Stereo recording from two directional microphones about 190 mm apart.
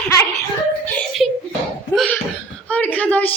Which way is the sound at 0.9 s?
Centre (ahead or behind).